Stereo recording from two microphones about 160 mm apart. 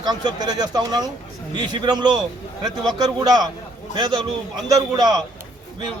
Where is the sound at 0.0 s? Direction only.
25° right (ahead or behind).